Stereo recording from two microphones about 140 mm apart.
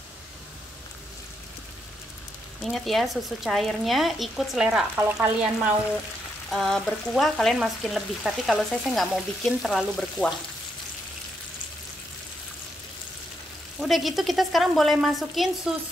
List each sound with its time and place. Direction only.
2.6 s frying: centre (ahead or behind)
4.9 s speech: 15° right (ahead or behind)
6.5 s frying: 5° left (ahead or behind)
13.7 s frying: centre (ahead or behind)